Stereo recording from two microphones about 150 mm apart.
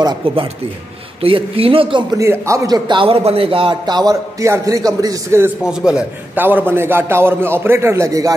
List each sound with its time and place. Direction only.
1.2 s speech: 40° right (ahead or behind)
2.1 s a man's voice: 20° right (ahead or behind)
5.6 s a man's voice: 5° right (ahead or behind); by 8.4 s 20° right (ahead or behind)